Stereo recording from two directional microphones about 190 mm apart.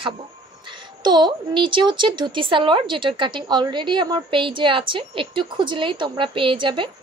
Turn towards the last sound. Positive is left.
turn(degrees=-25)  # may be behind; listen again after turning